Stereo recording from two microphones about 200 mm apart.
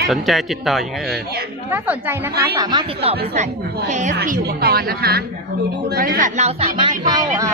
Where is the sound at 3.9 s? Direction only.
35° right (ahead or behind).